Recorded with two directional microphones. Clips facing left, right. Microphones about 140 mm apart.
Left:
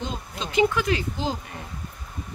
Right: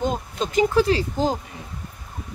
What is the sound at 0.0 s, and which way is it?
Speech, 45° right (ahead or behind).